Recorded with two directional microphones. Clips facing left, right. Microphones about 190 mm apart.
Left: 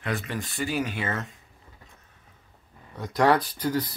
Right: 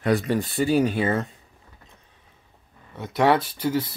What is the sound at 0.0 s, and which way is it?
Speech, 40° right (ahead or behind).